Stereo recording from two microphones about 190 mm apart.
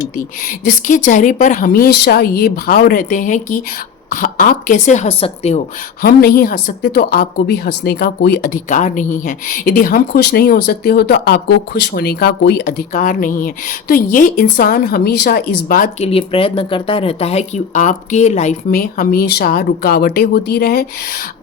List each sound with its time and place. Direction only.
0.4 s a woman's voice: 45° left (ahead or behind)
6.0 s a woman's voice: 55° left (ahead or behind)
16.0 s speech: 30° left (ahead or behind)
18.8 s a woman's voice: 55° left (ahead or behind)